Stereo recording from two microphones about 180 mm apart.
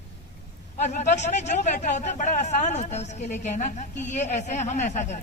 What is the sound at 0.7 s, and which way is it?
A man's voice, 40° left (ahead or behind).